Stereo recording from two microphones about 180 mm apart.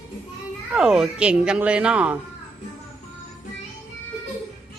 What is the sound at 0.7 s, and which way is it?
Speech, 5° right (ahead or behind).